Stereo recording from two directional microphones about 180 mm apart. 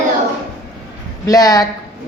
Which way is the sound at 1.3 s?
20° left (ahead or behind).